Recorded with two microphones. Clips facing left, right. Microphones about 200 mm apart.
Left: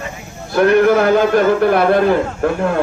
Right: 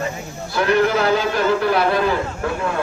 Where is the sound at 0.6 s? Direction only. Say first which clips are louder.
Left 6 dB; 55° left (ahead or behind).